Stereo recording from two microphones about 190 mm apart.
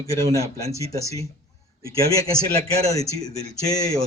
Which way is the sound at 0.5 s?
15° left (ahead or behind).